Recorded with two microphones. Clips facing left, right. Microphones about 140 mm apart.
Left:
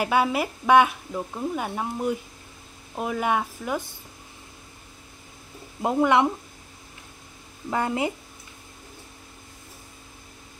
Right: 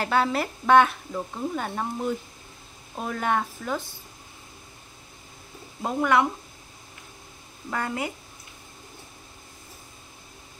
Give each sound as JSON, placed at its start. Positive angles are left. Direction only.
{"t": 0.0, "sound": "speech", "side_deg": 10}
{"t": 5.8, "sound": "speech", "side_deg": 20}
{"t": 7.7, "sound": "speech", "side_deg": 20}